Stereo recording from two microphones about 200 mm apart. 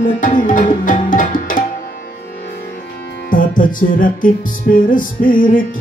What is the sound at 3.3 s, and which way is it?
Music, 40° left (ahead or behind).